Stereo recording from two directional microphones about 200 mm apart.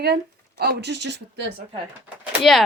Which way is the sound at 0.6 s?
55° right (ahead or behind).